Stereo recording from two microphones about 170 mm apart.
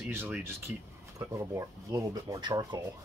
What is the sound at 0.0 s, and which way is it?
Speech, 15° right (ahead or behind).